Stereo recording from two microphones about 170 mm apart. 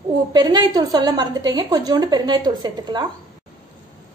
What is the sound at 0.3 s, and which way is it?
A woman's voice, 25° right (ahead or behind).